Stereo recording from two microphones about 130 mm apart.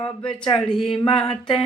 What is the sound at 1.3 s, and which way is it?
Speech, 40° left (ahead or behind).